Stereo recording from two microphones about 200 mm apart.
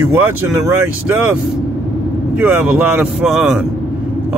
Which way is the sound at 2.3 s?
5° right (ahead or behind).